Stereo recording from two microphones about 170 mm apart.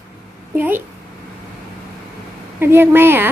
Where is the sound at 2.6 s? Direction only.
15° right (ahead or behind).